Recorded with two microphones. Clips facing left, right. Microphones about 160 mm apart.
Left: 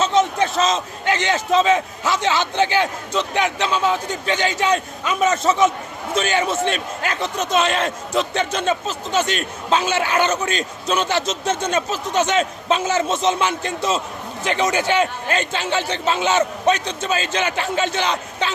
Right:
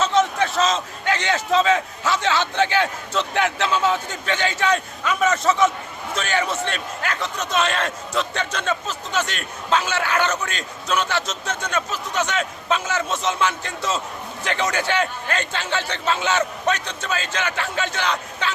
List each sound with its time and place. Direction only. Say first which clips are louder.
0.0 s a man's voice: left 2 dB; 20° left (ahead or behind)